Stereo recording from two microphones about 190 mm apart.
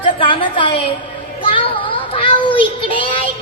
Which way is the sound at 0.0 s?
25° left (ahead or behind).